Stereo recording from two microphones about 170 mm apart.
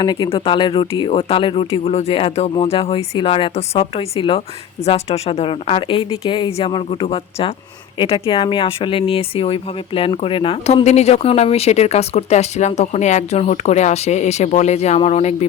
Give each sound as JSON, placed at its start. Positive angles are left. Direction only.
{"t": 0.0, "sound": "speech", "side_deg": 25}